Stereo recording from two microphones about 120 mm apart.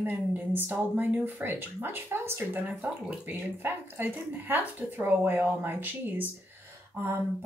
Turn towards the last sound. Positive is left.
turn(degrees=-15)  # may be behind; listen again after turning